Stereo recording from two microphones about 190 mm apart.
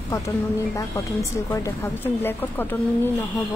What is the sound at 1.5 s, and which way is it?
A woman's voice, 15° left (ahead or behind).